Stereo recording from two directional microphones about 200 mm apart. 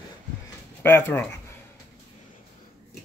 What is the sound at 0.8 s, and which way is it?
Speech, 10° left (ahead or behind).